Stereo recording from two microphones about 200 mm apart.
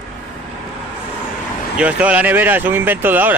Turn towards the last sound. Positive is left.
turn(degrees=-10)  # may be behind; listen again after turning